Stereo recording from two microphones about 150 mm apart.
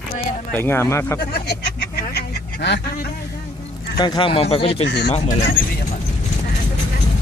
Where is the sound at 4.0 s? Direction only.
30° left (ahead or behind).